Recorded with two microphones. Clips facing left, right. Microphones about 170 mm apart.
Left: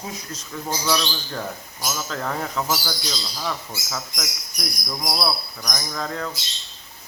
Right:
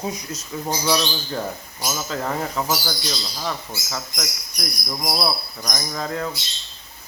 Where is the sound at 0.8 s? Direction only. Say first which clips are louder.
Right 2 dB; 15° right (ahead or behind).